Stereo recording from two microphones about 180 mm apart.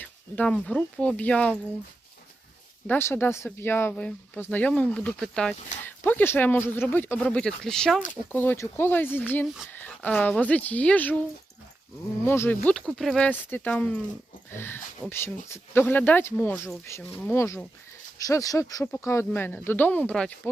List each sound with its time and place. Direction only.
0.0 s speech: 5° left (ahead or behind)
2.8 s speech: 10° left (ahead or behind)
12.2 s speech: 15° left (ahead or behind)